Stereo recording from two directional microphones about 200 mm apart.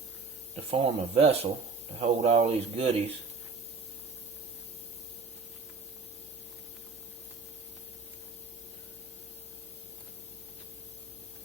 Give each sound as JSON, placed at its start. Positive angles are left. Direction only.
{"t": 0.5, "sound": "speech", "side_deg": -30}